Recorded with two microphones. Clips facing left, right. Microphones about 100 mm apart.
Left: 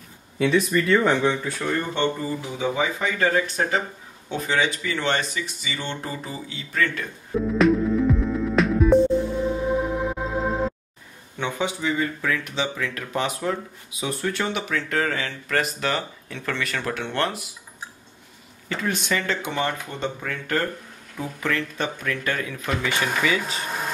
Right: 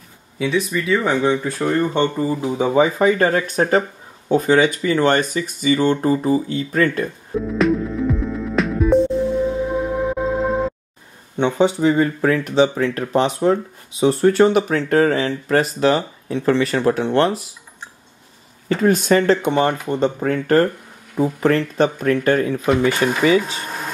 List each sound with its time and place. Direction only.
0.4 s speech: centre (ahead or behind)
1.2 s speech: 20° right (ahead or behind)
2.5 s speech: 45° right (ahead or behind)
7.3 s music: centre (ahead or behind)
11.3 s speech: 30° right (ahead or behind)
18.7 s speech: 45° right (ahead or behind)